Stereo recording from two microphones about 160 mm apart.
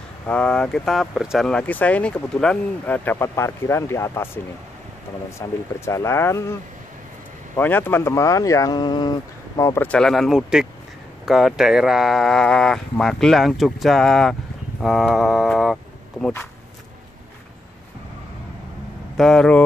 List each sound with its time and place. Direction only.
0.3 s speech: 5° left (ahead or behind)
5.4 s speech: 20° left (ahead or behind)
7.5 s speech: 15° left (ahead or behind)
9.8 s speech: 5° left (ahead or behind)
19.1 s speech: 5° left (ahead or behind)